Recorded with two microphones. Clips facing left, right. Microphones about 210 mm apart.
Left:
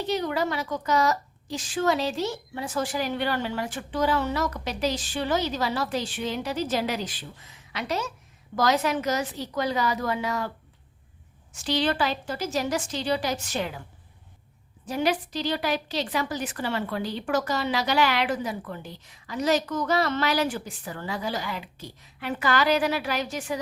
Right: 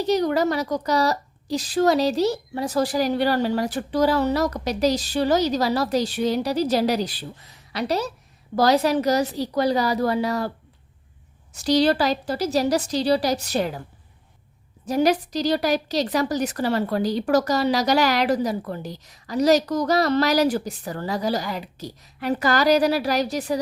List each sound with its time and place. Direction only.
0.0 s a woman's voice: 40° right (ahead or behind)
11.5 s a woman's voice: 40° right (ahead or behind)
14.8 s a woman's voice: 40° right (ahead or behind)